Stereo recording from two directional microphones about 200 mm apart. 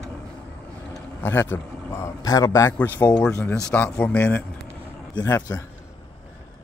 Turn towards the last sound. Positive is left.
turn(degrees=15)  # may be behind; listen again after turning